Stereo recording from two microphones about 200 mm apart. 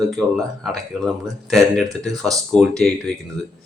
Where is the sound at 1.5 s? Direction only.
Centre (ahead or behind).